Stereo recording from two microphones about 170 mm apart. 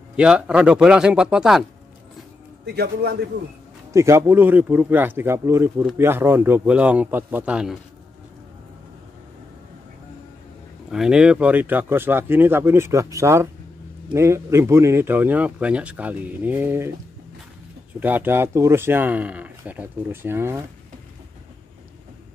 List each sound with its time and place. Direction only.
0.1 s speech: 5° right (ahead or behind)
2.6 s a man's voice: 70° right (ahead or behind)
3.9 s speech: 15° right (ahead or behind)
10.9 s speech: 5° right (ahead or behind)
18.0 s speech: 10° right (ahead or behind)